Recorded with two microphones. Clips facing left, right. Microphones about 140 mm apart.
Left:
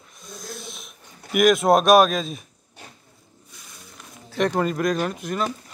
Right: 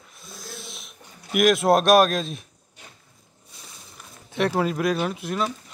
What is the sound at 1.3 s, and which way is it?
Speech, centre (ahead or behind).